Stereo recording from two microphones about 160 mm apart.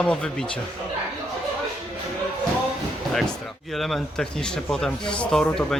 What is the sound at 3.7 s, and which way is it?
Speech, centre (ahead or behind).